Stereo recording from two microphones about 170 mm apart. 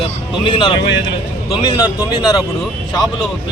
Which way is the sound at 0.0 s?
30° left (ahead or behind).